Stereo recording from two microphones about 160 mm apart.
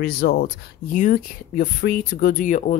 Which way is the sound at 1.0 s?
60° left (ahead or behind).